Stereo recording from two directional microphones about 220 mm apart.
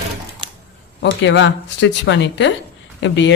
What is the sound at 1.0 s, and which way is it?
Speech, 55° left (ahead or behind).